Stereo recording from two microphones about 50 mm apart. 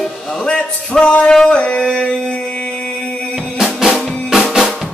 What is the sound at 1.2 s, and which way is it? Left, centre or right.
Music, centre.